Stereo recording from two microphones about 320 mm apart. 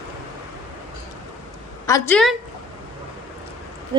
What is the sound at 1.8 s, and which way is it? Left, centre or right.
Speech, centre.